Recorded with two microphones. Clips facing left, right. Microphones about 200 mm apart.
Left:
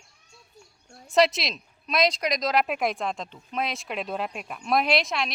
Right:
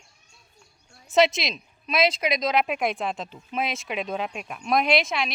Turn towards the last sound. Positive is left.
turn(degrees=0)  # may be behind; listen again after turning